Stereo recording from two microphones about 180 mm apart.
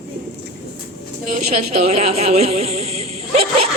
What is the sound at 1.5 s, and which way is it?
Speech, 35° right (ahead or behind).